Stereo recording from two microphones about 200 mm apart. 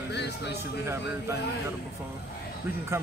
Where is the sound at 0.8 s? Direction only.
15° right (ahead or behind).